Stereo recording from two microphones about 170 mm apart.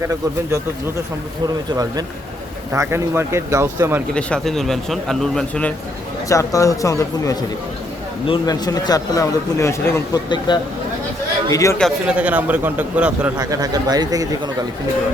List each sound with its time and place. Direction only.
1.7 s a man's voice: 20° right (ahead or behind)
4.1 s speech: 5° left (ahead or behind)
6.2 s a man's voice: 20° left (ahead or behind)
11.8 s a man's voice: 5° right (ahead or behind)
13.4 s speech: 20° right (ahead or behind)